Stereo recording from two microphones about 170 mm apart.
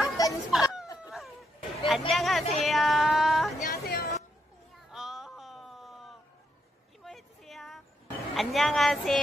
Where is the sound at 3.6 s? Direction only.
60° left (ahead or behind).